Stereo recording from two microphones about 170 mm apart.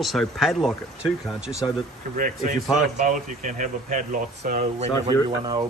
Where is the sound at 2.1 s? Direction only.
50° right (ahead or behind).